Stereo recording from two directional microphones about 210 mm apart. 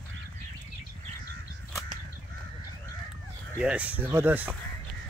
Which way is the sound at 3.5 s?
5° right (ahead or behind).